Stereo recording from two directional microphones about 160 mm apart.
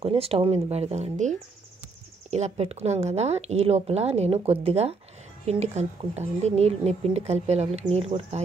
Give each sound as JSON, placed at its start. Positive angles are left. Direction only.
{"t": 0.0, "sound": "speech", "side_deg": -40}
{"t": 2.3, "sound": "speech", "side_deg": -40}